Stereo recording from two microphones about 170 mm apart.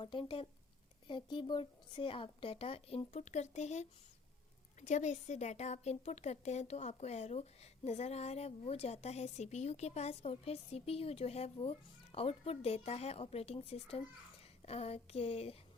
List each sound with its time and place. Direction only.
0.0 s speech: 30° left (ahead or behind)